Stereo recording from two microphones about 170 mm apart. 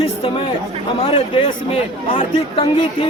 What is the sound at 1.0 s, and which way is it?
A man's voice, 35° left (ahead or behind).